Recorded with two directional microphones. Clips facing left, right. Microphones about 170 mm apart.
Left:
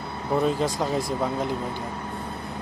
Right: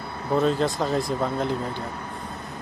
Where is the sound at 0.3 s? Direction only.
15° left (ahead or behind).